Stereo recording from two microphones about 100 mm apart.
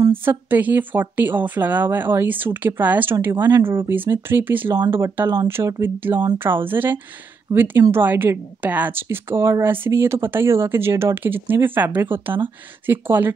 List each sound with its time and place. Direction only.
0.1 s speech: 20° right (ahead or behind)